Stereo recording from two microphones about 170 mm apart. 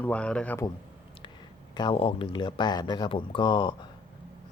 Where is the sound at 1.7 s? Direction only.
30° left (ahead or behind).